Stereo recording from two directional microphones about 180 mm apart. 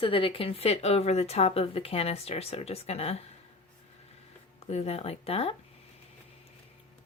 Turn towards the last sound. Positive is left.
turn(degrees=35)  # may be behind; listen again after turning